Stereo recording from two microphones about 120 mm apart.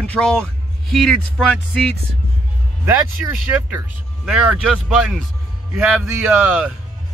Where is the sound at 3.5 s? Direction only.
10° right (ahead or behind).